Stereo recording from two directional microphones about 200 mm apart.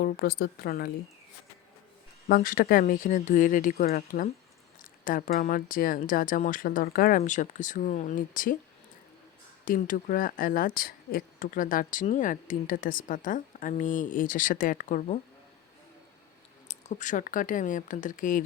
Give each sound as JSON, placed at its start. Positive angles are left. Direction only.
{"t": 0.0, "sound": "speech", "side_deg": 50}
{"t": 2.2, "sound": "speech", "side_deg": 45}
{"t": 9.6, "sound": "speech", "side_deg": 45}
{"t": 16.6, "sound": "speech", "side_deg": 35}